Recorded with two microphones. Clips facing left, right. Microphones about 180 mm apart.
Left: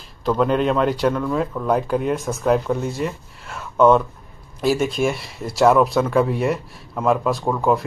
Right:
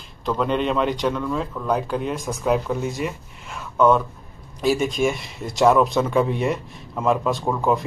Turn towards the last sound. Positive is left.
turn(degrees=0)  # may be behind; listen again after turning